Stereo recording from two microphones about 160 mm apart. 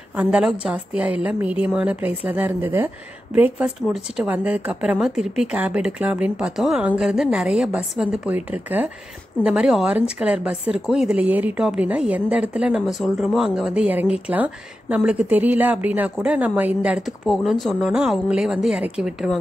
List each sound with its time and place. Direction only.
0.1 s a woman's voice: 10° right (ahead or behind)